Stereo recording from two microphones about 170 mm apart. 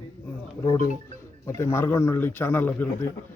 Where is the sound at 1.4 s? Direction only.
15° left (ahead or behind).